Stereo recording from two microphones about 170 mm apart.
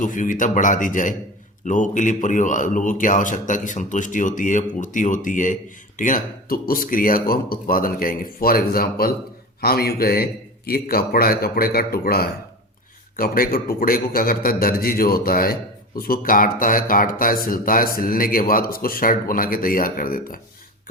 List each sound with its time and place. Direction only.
0.0 s speech: 50° left (ahead or behind)